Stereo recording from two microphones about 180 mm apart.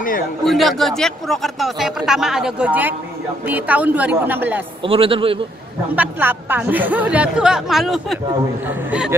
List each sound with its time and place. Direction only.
0.5 s speech: centre (ahead or behind)
4.8 s a man's voice: 30° right (ahead or behind)
5.9 s speech: 10° right (ahead or behind)